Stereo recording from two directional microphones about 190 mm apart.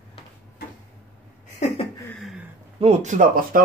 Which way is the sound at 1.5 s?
40° left (ahead or behind).